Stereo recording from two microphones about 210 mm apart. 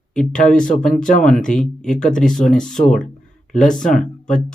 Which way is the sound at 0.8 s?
5° left (ahead or behind).